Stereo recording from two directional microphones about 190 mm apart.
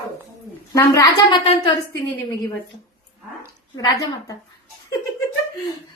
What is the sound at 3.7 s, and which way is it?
Speech, 20° left (ahead or behind).